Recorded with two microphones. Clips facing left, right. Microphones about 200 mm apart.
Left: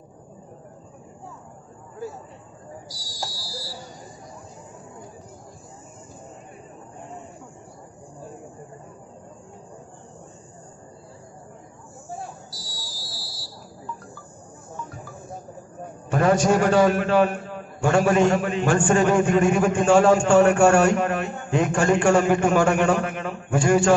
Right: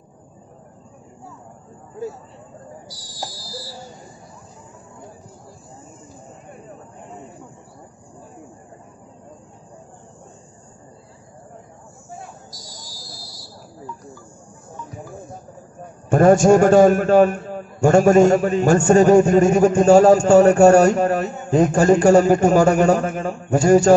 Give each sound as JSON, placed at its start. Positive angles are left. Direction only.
{"t": 16.1, "sound": "a man's voice", "side_deg": -45}